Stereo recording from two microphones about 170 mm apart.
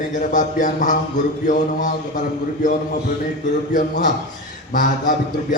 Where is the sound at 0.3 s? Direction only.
50° left (ahead or behind).